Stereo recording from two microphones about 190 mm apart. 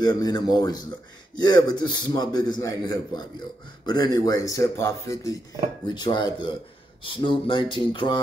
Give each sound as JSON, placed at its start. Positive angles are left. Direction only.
{"t": 0.0, "sound": "a man's voice", "side_deg": 20}